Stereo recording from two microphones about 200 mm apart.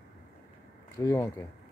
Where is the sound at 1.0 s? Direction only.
15° left (ahead or behind).